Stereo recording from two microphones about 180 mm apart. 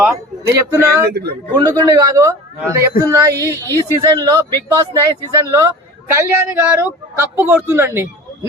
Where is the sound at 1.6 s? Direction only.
20° right (ahead or behind).